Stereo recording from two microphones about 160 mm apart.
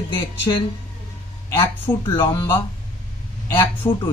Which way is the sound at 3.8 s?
15° left (ahead or behind).